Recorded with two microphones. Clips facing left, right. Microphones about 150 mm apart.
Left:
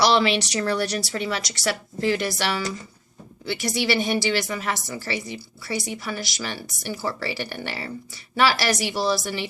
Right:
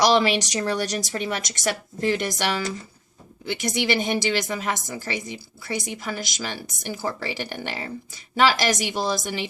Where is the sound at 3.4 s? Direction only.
20° right (ahead or behind).